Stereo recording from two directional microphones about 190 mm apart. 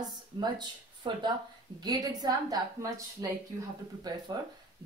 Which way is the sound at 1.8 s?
20° right (ahead or behind).